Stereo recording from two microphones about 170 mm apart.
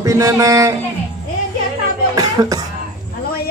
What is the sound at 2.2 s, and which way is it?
Cough, 20° right (ahead or behind).